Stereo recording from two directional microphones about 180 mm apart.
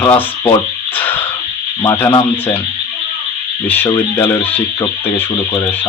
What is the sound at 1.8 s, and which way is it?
Speech, 15° left (ahead or behind).